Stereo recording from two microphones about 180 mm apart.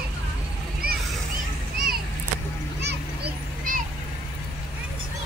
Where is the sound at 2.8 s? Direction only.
55° right (ahead or behind).